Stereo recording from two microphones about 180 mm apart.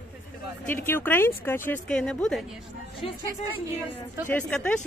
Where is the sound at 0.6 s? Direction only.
10° left (ahead or behind).